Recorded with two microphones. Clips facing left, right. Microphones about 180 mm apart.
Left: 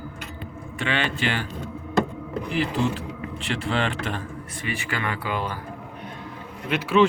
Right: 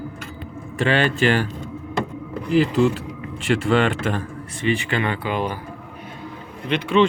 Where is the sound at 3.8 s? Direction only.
45° right (ahead or behind).